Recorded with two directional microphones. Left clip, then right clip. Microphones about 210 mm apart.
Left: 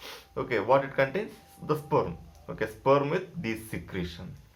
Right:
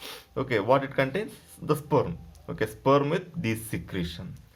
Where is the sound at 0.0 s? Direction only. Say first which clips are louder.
Right 2 dB; 35° right (ahead or behind).